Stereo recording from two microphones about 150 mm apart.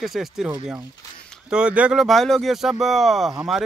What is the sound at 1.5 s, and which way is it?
Speech, 5° right (ahead or behind).